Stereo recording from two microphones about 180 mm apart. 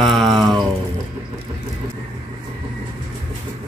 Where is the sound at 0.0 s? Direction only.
Centre (ahead or behind).